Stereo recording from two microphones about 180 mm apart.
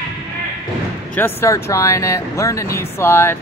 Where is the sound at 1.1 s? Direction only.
10° left (ahead or behind).